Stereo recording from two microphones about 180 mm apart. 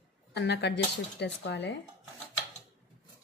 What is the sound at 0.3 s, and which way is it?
Speech, 70° left (ahead or behind).